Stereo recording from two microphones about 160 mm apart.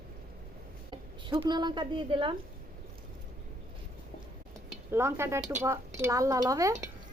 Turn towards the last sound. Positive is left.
turn(degrees=-20)  # may be behind; listen again after turning